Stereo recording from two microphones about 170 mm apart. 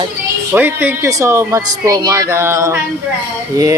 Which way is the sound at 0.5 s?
10° right (ahead or behind).